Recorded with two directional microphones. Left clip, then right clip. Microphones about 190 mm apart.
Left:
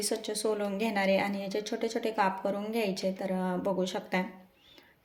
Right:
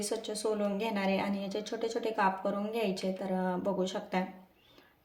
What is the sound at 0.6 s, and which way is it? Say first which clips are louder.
A woman's voice: left 2 dB; 25° left (ahead or behind).